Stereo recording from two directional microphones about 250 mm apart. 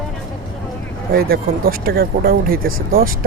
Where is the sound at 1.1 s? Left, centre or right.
Right.